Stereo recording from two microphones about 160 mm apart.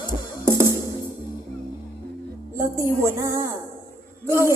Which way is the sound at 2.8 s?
15° right (ahead or behind).